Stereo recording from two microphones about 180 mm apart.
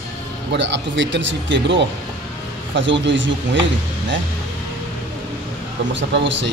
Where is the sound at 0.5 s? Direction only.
80° right.